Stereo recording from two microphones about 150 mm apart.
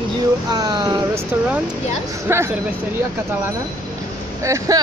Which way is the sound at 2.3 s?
15° right (ahead or behind).